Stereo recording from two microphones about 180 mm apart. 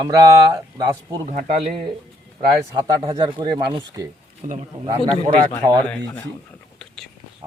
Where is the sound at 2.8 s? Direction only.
20° right (ahead or behind).